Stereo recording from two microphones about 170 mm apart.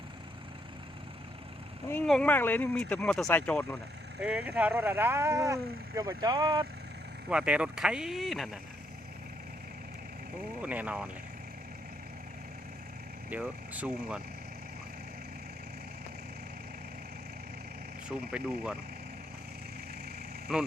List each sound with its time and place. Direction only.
2.0 s speech: 5° left (ahead or behind)
4.2 s speech: 5° right (ahead or behind); by 6.7 s 25° right (ahead or behind)
7.3 s speech: 5° right (ahead or behind)
10.6 s speech: 10° right (ahead or behind)
13.3 s speech: 10° right (ahead or behind)
18.3 s speech: 5° right (ahead or behind)